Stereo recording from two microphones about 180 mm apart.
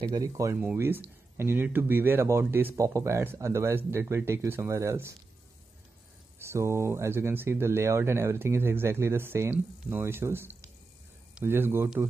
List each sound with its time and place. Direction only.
0.0 s speech: 20° right (ahead or behind)
6.4 s speech: 15° right (ahead or behind)